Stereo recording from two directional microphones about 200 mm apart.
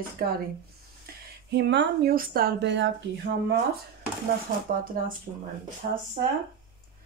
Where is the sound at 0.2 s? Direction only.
50° right (ahead or behind).